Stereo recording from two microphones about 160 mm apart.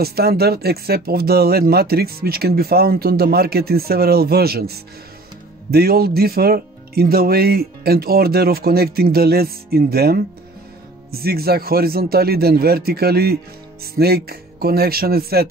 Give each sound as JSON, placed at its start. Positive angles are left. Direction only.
{"t": 0.0, "sound": "speech", "side_deg": -75}